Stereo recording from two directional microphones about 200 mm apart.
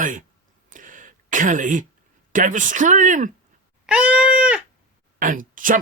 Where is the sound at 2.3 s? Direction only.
40° right (ahead or behind).